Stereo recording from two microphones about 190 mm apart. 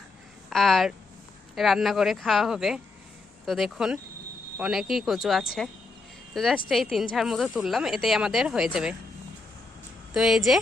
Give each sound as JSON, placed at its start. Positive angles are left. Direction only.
{"t": 0.5, "sound": "speech", "side_deg": 0}
{"t": 10.2, "sound": "speech", "side_deg": 0}